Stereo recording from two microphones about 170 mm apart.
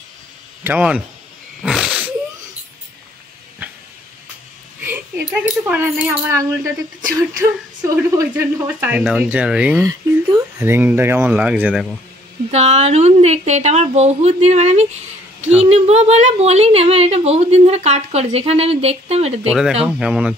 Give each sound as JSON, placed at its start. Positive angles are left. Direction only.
{"t": 0.7, "sound": "speech", "side_deg": -5}
{"t": 1.6, "sound": "a sound", "side_deg": -5}
{"t": 4.8, "sound": "a sound", "side_deg": -10}
{"t": 5.3, "sound": "speech", "side_deg": -10}
{"t": 9.8, "sound": "speech", "side_deg": -20}
{"t": 12.4, "sound": "a woman's voice", "side_deg": -40}
{"t": 20.0, "sound": "speech", "side_deg": -5}